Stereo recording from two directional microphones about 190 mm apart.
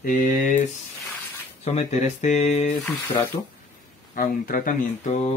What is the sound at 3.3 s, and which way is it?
Speech, 25° left (ahead or behind).